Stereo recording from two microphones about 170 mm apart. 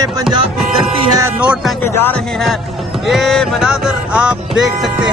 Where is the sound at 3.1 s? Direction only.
Centre (ahead or behind).